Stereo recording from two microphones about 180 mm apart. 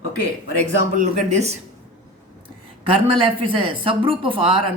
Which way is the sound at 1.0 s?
40° right (ahead or behind).